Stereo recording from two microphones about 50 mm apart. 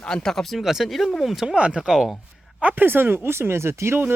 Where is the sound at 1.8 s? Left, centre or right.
Centre.